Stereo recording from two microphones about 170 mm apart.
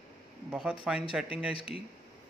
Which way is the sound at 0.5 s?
5° right (ahead or behind).